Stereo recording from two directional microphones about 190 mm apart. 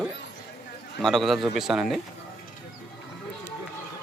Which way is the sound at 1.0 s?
Centre (ahead or behind).